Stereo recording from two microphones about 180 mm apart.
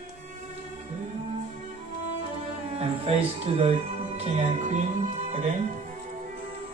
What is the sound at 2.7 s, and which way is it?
Speech, 35° right (ahead or behind).